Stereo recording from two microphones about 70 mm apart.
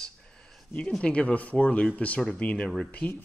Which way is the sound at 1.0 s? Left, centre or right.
Centre.